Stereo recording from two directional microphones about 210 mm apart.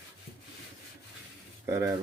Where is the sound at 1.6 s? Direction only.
15° right (ahead or behind).